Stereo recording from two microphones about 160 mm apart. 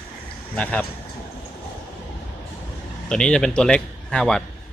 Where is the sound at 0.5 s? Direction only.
10° left (ahead or behind).